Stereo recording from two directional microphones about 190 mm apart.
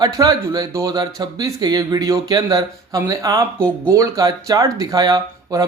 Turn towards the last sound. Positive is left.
turn(degrees=-20)  # may be behind; listen again after turning